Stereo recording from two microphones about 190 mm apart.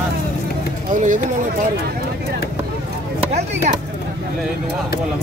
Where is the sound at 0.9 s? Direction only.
45° right (ahead or behind).